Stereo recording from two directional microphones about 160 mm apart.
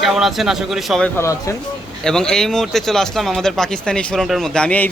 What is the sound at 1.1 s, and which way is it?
Speech, 20° left (ahead or behind).